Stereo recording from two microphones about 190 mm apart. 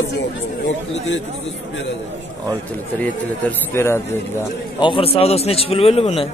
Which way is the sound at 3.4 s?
15° left (ahead or behind).